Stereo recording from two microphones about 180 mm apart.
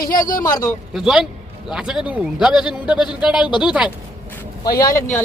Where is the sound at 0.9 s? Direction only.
Centre (ahead or behind).